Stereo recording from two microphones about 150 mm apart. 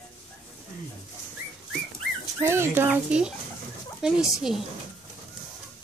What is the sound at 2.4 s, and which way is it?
Speech, 15° right (ahead or behind).